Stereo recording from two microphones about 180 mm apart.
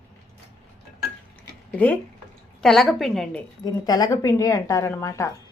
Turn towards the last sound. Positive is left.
turn(degrees=15)  # may be behind; listen again after turning